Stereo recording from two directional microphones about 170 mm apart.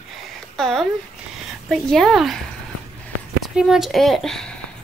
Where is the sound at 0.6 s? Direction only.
Centre (ahead or behind).